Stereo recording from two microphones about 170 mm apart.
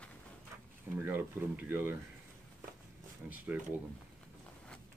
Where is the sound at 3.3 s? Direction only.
10° right (ahead or behind).